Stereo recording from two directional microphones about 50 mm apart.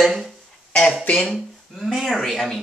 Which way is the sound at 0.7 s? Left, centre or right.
Left.